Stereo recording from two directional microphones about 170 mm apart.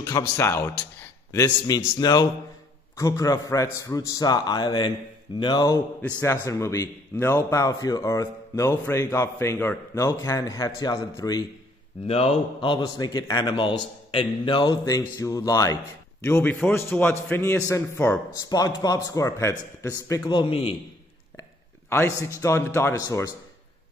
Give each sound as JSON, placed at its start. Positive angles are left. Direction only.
{"t": 0.4, "sound": "a man's voice", "side_deg": 15}
{"t": 6.0, "sound": "speech", "side_deg": 10}
{"t": 12.1, "sound": "a man's voice", "side_deg": 35}
{"t": 18.5, "sound": "a man's voice", "side_deg": 20}
{"t": 21.4, "sound": "a man's voice", "side_deg": 15}